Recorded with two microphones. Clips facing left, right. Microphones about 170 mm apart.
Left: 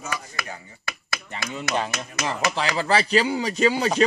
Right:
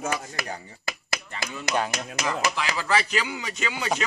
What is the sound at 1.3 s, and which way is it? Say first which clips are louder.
Speech: left 6 dB; 20° left (ahead or behind).